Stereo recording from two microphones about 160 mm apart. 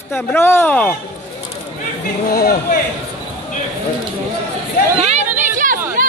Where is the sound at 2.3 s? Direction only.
70° left (ahead or behind).